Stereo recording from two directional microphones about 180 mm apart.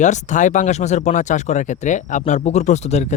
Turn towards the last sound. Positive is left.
turn(degrees=40)  # may be behind; listen again after turning